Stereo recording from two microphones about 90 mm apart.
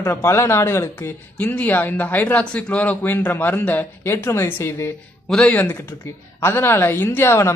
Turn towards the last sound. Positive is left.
turn(degrees=30)  # may be behind; listen again after turning